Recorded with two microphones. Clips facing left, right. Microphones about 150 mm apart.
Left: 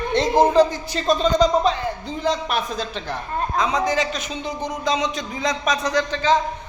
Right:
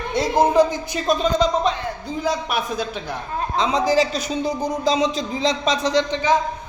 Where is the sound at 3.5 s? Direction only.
25° right (ahead or behind).